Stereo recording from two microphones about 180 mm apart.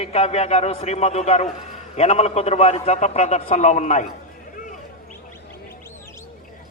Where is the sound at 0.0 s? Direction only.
35° left (ahead or behind).